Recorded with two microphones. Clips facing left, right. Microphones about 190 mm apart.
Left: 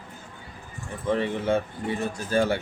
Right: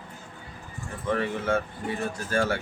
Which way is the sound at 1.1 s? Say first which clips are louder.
Left 2 dB; 20° left (ahead or behind).